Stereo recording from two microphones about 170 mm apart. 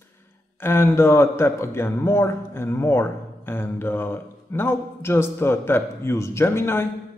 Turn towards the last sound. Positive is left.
turn(degrees=15)  # may be behind; listen again after turning